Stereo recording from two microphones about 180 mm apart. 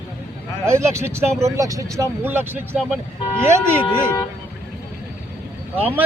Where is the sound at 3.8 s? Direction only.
20° left (ahead or behind).